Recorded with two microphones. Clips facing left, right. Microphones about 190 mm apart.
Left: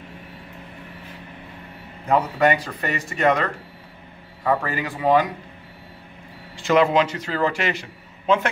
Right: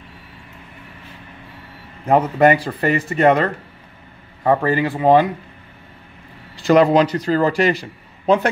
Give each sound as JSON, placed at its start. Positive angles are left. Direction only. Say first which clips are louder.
{"t": 2.3, "sound": "a man's voice", "louder": "right 5 dB", "side_deg": -35}
{"t": 6.6, "sound": "a man's voice", "louder": "right 5 dB", "side_deg": -40}